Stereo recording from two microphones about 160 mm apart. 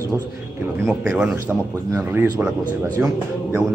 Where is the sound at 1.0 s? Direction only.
10° right (ahead or behind).